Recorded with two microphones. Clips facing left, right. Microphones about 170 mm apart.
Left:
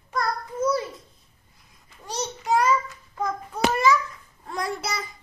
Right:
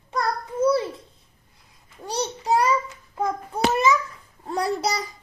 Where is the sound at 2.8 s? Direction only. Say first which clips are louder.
Right 3 dB; 15° right (ahead or behind).